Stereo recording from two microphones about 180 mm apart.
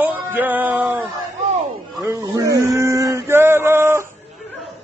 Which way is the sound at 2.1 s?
15° right (ahead or behind).